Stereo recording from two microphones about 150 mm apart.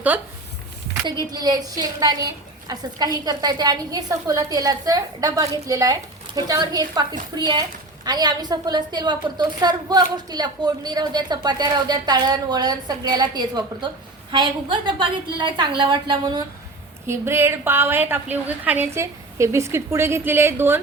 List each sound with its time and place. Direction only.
0.1 s a woman's voice: 10° right (ahead or behind)
1.3 s a woman's voice: 25° right (ahead or behind)
17.1 s a woman's voice: 15° right (ahead or behind)